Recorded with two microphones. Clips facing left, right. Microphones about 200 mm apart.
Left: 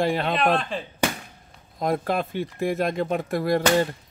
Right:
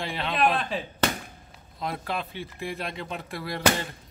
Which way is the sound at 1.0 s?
10° left (ahead or behind).